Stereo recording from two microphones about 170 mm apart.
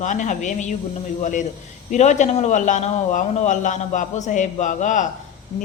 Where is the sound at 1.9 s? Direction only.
45° left (ahead or behind).